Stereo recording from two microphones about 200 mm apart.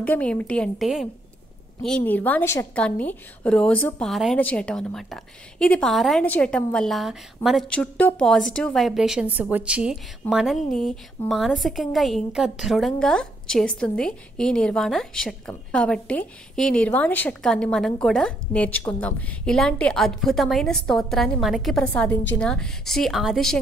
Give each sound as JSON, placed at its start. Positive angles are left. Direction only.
{"t": 0.0, "sound": "a woman's voice", "side_deg": 5}